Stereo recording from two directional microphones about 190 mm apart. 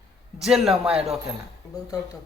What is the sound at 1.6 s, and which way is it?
Speech, 15° left (ahead or behind).